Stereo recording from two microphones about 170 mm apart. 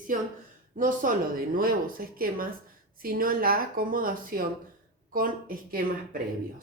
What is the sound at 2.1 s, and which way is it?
Speech, 60° right (ahead or behind).